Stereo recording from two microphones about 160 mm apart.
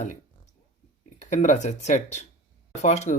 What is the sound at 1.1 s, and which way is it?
Speech, 50° left (ahead or behind).